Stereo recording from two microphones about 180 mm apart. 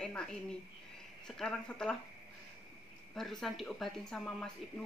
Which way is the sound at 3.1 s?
Centre (ahead or behind).